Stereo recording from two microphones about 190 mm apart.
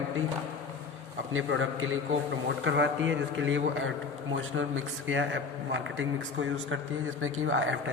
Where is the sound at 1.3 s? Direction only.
90° right.